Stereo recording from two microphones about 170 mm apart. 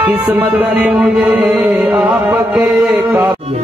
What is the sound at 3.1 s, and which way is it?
Music, 10° right (ahead or behind).